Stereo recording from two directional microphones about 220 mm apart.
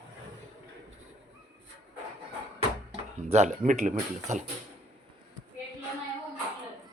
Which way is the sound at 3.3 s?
35° right (ahead or behind).